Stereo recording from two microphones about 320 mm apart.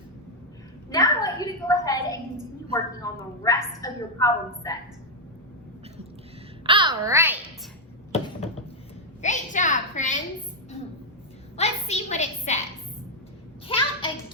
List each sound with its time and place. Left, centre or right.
0.9 s a sound: centre
3.8 s a woman's voice: centre
6.7 s a child's voice: centre
9.2 s a woman's voice: left
11.5 s a woman's voice: centre
13.7 s a child's voice: centre